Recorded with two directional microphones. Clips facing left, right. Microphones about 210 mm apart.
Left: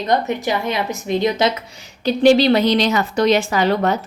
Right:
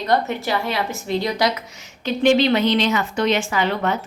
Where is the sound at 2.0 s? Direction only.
35° left (ahead or behind).